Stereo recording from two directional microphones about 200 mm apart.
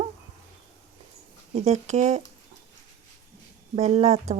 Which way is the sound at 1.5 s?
35° right (ahead or behind).